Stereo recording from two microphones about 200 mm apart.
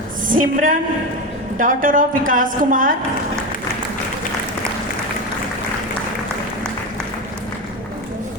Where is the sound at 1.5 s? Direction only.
45° right (ahead or behind).